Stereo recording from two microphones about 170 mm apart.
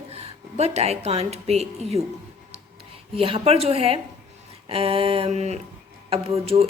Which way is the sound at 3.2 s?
35° right (ahead or behind).